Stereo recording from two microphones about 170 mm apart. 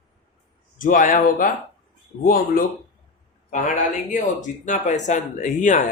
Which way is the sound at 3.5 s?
50° left (ahead or behind).